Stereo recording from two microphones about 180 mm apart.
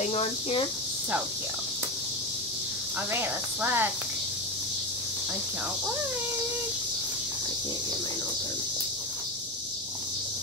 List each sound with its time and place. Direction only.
0.0 s speech: 35° left (ahead or behind)
3.1 s speech: 10° right (ahead or behind)